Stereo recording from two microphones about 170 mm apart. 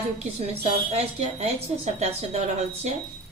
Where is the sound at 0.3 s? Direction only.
40° right (ahead or behind).